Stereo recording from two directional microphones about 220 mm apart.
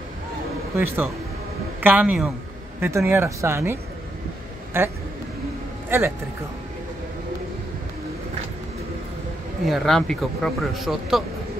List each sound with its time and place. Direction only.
0.7 s speech: 10° right (ahead or behind)
4.7 s speech: 10° right (ahead or behind)
9.7 s speech: centre (ahead or behind)